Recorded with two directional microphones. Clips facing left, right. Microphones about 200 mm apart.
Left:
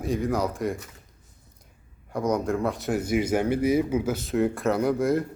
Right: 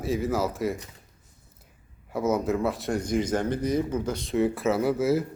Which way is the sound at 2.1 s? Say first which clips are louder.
Even; 5° right (ahead or behind).